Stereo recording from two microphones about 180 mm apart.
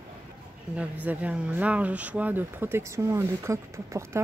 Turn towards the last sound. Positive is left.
turn(degrees=-15)  # may be behind; listen again after turning